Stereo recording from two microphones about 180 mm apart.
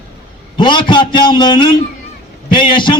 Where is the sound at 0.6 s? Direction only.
25° left (ahead or behind).